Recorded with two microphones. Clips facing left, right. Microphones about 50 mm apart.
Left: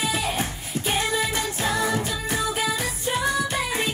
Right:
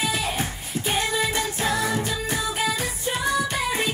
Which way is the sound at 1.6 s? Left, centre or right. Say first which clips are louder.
Left 1 dB; centre.